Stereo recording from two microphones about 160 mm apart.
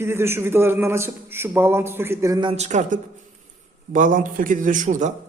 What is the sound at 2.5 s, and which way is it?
A man's voice, 45° right (ahead or behind).